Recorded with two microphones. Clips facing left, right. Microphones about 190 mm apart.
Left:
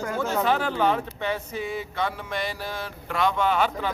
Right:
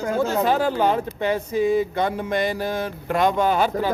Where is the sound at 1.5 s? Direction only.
40° right (ahead or behind).